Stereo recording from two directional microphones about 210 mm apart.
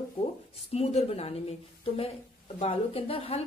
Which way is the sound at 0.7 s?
30° left (ahead or behind).